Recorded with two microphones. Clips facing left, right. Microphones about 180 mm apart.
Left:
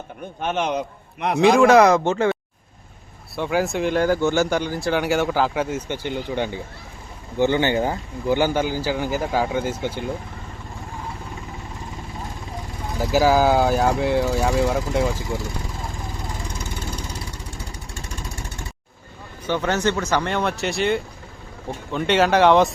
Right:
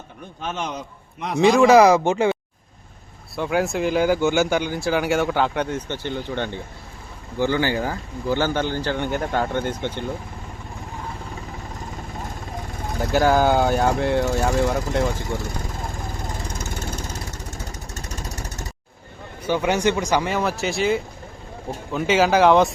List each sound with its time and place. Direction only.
0.3 s a man's voice: 60° left (ahead or behind)
1.4 s speech: centre (ahead or behind)
3.3 s speech: centre (ahead or behind)
13.0 s speech: centre (ahead or behind)
16.0 s vehicle: 45° right (ahead or behind)
19.5 s speech: 10° right (ahead or behind)